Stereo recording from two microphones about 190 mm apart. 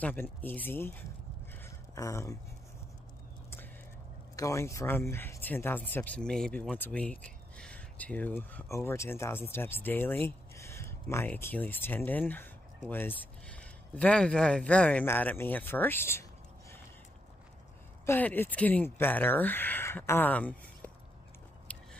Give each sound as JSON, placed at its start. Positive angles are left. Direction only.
{"t": 0.0, "sound": "speech", "side_deg": 10}
{"t": 1.5, "sound": "a sound", "side_deg": 15}
{"t": 4.4, "sound": "speech", "side_deg": 15}
{"t": 18.0, "sound": "speech", "side_deg": 10}
{"t": 21.7, "sound": "biting", "side_deg": 5}